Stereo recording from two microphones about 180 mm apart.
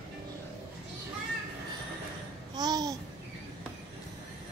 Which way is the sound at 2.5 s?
20° right (ahead or behind).